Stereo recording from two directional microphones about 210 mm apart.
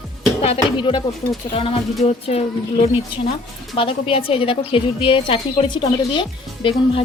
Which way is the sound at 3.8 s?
25° left (ahead or behind).